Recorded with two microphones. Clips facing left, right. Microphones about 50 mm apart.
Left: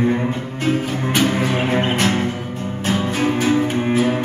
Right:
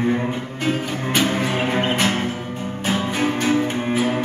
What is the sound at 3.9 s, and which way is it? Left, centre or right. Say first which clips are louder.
Cello: left 2 dB; centre.